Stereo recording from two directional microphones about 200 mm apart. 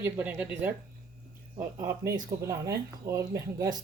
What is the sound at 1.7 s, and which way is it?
A woman's voice, 15° right (ahead or behind).